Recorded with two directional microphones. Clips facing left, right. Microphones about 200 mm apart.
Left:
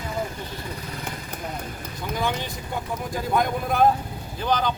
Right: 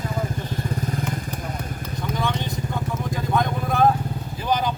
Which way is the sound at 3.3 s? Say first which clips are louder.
Even; 5° left (ahead or behind).